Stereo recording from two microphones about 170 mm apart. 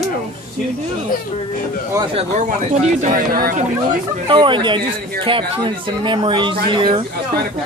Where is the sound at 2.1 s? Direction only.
45° right (ahead or behind).